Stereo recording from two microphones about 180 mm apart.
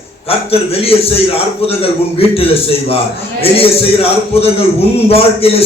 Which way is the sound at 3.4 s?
35° left (ahead or behind).